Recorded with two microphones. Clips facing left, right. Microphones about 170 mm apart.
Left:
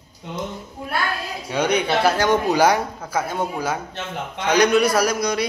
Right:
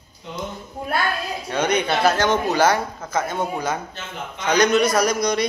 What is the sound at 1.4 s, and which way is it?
A man's voice, 10° left (ahead or behind).